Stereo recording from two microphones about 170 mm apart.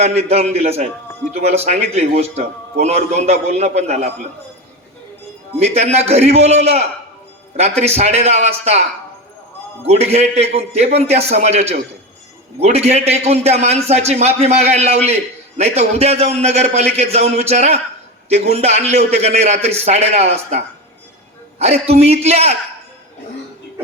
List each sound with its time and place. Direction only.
0.0 s a man's voice: 40° right (ahead or behind)
5.5 s a man's voice: 40° right (ahead or behind)
9.8 s a man's voice: 40° right (ahead or behind)